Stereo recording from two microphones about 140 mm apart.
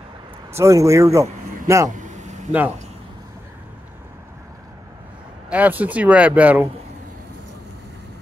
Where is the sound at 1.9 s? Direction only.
60° right (ahead or behind).